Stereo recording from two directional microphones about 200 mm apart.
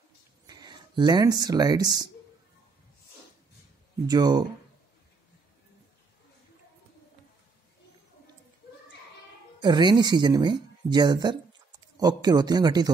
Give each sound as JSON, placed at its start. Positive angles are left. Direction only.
{"t": 0.5, "sound": "speech", "side_deg": -20}
{"t": 4.1, "sound": "speech", "side_deg": -20}
{"t": 9.6, "sound": "speech", "side_deg": -20}